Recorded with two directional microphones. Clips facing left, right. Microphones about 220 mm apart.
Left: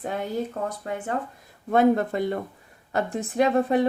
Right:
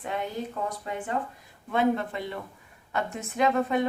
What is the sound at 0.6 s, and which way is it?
Speech, 45° left (ahead or behind).